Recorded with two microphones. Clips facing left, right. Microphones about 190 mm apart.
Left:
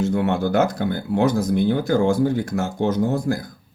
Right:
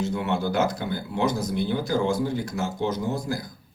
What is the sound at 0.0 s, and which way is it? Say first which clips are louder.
Speech: left 5 dB; 55° left (ahead or behind).